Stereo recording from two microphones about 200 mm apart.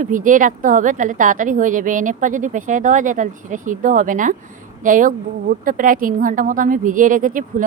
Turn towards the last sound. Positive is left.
turn(degrees=-40)  # may be behind; listen again after turning